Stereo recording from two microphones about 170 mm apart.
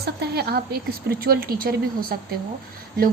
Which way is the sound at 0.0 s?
70° right (ahead or behind).